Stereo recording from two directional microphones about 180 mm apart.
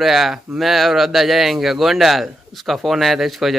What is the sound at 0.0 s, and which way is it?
Speech, centre (ahead or behind).